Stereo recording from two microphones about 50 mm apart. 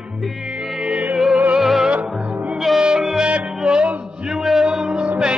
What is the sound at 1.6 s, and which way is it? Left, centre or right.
Music, centre.